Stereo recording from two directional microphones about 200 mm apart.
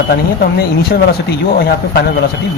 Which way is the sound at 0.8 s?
50° left (ahead or behind).